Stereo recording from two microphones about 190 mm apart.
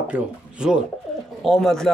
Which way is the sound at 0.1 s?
5° right (ahead or behind).